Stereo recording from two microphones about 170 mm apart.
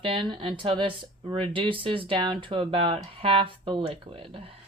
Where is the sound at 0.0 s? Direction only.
30° right (ahead or behind).